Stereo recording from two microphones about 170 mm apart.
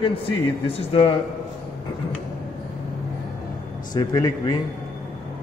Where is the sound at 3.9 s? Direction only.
20° left (ahead or behind).